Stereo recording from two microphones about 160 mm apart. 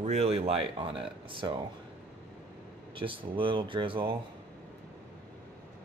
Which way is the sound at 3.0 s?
30° right (ahead or behind).